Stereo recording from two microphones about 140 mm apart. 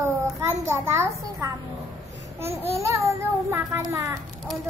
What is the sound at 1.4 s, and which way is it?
Speech, 20° right (ahead or behind).